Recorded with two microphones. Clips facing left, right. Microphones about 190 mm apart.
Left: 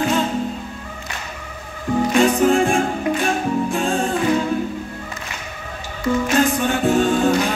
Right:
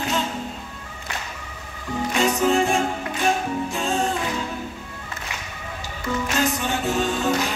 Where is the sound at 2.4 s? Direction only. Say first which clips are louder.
Left 4 dB; 50° left (ahead or behind).